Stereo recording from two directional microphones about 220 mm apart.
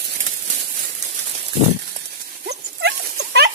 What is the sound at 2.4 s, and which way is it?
Dog, 50° right (ahead or behind).